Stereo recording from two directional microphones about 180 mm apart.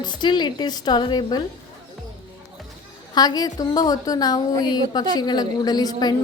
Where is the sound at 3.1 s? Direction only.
20° left (ahead or behind).